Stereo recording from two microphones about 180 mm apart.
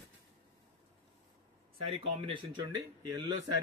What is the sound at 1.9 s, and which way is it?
Speech, 30° right (ahead or behind).